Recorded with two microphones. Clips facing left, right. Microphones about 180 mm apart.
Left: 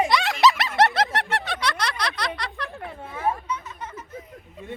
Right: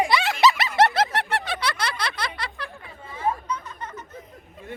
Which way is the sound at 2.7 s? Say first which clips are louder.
Left 5 dB; 65° left (ahead or behind).